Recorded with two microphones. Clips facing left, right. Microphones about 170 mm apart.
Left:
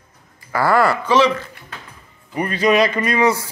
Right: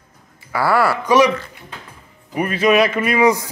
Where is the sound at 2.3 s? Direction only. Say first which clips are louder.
Right 1 dB; 5° right (ahead or behind).